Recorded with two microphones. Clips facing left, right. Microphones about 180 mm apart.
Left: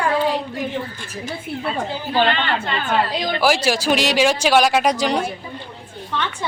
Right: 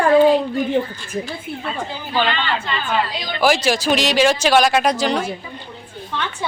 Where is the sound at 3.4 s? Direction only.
5° left (ahead or behind).